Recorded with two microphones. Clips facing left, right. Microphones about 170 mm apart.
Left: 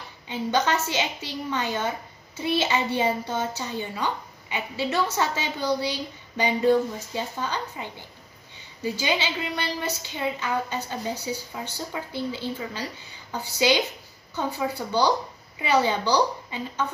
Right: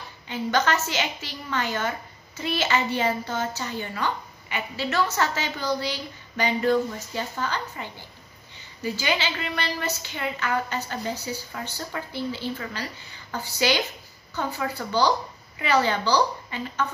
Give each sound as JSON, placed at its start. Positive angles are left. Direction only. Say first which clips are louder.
{"t": 0.3, "sound": "a woman's voice", "louder": "even", "side_deg": 20}